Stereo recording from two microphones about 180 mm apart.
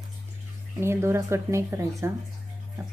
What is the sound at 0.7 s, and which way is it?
Speech, 15° right (ahead or behind).